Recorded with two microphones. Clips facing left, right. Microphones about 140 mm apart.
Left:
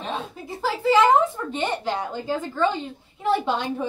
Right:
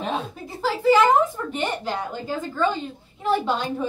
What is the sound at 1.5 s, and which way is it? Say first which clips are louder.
A child's voice: left 1 dB; 20° left (ahead or behind).